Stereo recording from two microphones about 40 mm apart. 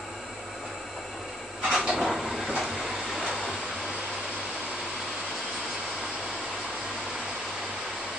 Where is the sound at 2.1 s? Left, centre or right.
Centre.